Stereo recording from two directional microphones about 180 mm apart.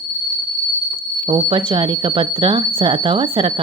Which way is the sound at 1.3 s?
25° right (ahead or behind).